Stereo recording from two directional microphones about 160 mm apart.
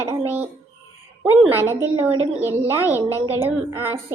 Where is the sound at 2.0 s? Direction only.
15° right (ahead or behind).